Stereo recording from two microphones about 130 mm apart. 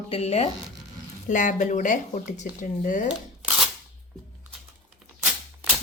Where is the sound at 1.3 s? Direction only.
80° left.